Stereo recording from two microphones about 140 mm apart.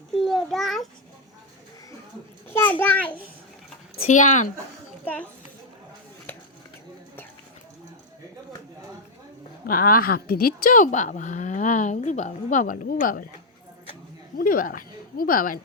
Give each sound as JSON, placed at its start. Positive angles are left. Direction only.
{"t": 0.1, "sound": "a sound", "side_deg": 0}
{"t": 2.5, "sound": "a child's voice", "side_deg": 15}
{"t": 4.0, "sound": "speech", "side_deg": 65}
{"t": 6.3, "sound": "chopping", "side_deg": 15}
{"t": 9.6, "sound": "speech", "side_deg": 85}
{"t": 14.3, "sound": "speech", "side_deg": 90}